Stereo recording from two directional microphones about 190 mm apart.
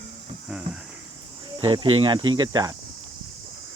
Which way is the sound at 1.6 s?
25° right (ahead or behind).